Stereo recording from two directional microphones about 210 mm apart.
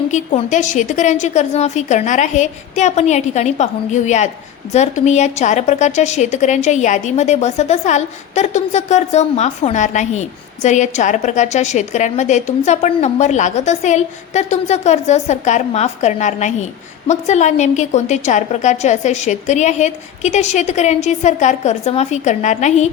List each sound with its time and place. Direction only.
0.1 s a woman's voice: 35° left (ahead or behind)